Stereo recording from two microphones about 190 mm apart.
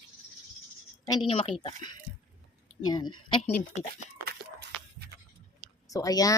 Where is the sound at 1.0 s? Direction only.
25° left (ahead or behind).